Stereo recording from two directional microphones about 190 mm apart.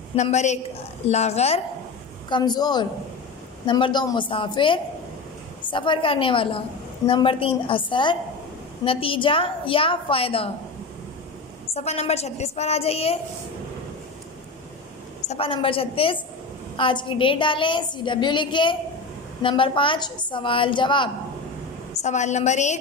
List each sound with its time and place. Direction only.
0.1 s a woman's voice: 35° left (ahead or behind)
2.2 s a woman's voice: 25° left (ahead or behind)
11.7 s a woman's voice: 35° left (ahead or behind)
15.2 s a woman's voice: 30° left (ahead or behind)
22.0 s a woman's voice: 40° left (ahead or behind)